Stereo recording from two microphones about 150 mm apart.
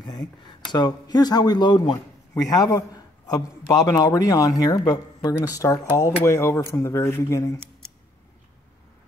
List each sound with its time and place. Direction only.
0.0 s a man's voice: 25° left (ahead or behind)